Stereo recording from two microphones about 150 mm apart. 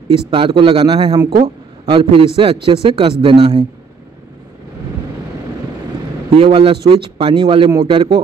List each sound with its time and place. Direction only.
0.1 s a man's voice: 35° right (ahead or behind)
1.3 s a man's voice: 40° right (ahead or behind)
6.3 s a man's voice: 40° right (ahead or behind)